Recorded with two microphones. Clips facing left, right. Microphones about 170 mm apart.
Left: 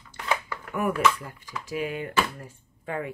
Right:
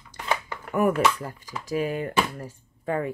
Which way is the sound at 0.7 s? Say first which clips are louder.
Right 3 dB; 40° right (ahead or behind).